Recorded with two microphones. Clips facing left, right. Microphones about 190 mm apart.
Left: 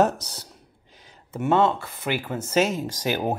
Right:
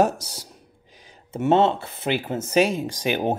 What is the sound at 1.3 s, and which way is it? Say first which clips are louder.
Speech: right 2 dB; 25° right (ahead or behind).